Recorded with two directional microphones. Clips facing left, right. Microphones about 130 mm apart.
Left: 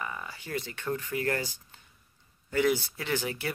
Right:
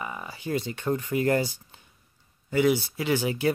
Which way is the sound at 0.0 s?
20° right (ahead or behind).